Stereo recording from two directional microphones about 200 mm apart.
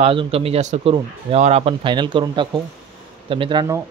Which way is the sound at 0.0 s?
30° right (ahead or behind).